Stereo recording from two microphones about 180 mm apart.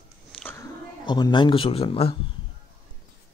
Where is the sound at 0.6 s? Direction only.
25° left (ahead or behind).